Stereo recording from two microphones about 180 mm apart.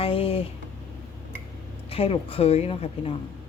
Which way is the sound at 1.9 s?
30° left (ahead or behind).